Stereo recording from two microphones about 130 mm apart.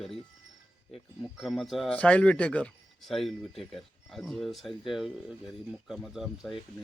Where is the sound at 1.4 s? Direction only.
Centre (ahead or behind).